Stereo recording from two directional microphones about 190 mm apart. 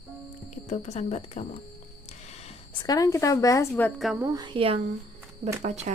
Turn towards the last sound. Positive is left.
turn(degrees=-40)  # may be behind; listen again after turning